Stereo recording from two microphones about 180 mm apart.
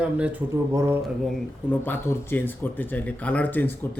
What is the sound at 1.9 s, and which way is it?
Speech, 10° left (ahead or behind).